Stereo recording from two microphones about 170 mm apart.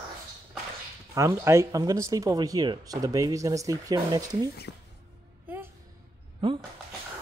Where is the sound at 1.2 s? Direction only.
15° right (ahead or behind).